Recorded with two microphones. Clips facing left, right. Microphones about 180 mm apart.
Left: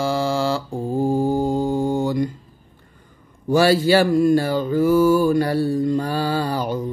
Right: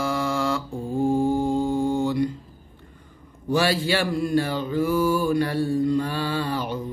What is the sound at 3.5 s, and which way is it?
Mantra, 45° left (ahead or behind).